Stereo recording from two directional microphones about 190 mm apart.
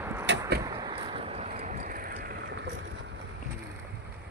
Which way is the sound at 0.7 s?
20° right (ahead or behind).